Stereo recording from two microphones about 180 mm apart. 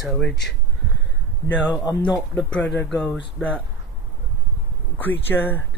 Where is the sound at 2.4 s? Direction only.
5° left (ahead or behind).